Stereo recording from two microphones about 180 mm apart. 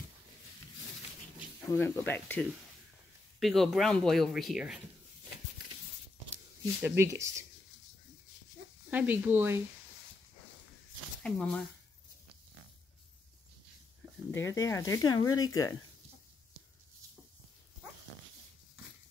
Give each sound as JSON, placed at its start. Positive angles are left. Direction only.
{"t": 1.6, "sound": "speech", "side_deg": 10}
{"t": 6.8, "sound": "speech", "side_deg": -15}
{"t": 8.9, "sound": "speech", "side_deg": -10}
{"t": 11.2, "sound": "speech", "side_deg": 5}
{"t": 14.3, "sound": "speech", "side_deg": 15}